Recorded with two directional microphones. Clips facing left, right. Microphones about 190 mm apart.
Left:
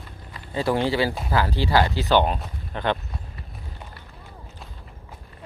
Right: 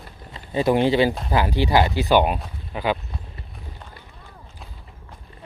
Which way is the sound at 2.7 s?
5° right (ahead or behind).